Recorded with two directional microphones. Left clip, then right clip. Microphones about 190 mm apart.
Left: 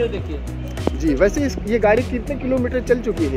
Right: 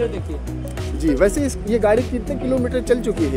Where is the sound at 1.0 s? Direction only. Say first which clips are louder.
Right 1 dB; 10° right (ahead or behind).